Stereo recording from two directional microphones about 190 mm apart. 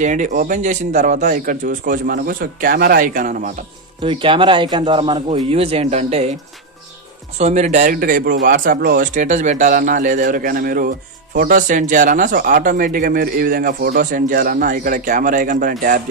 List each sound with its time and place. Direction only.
0.0 s a man's voice: 40° right (ahead or behind)
4.0 s speech: 25° right (ahead or behind)
7.3 s a man's voice: 35° right (ahead or behind)